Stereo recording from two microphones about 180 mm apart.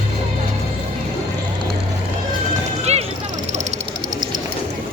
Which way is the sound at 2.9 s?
35° right (ahead or behind).